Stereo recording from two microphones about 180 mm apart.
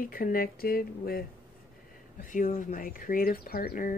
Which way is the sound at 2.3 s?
45° left (ahead or behind).